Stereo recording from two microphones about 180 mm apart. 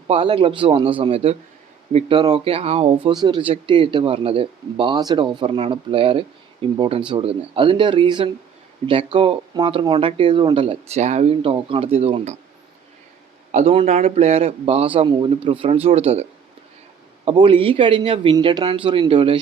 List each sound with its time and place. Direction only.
0.1 s speech: 30° right (ahead or behind)
13.5 s speech: 35° right (ahead or behind)
17.3 s speech: 30° right (ahead or behind)